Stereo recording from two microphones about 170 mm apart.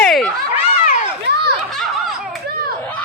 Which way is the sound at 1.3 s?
80° right.